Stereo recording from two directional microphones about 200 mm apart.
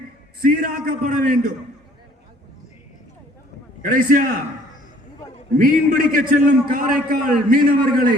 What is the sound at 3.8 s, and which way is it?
Speech, 45° right (ahead or behind).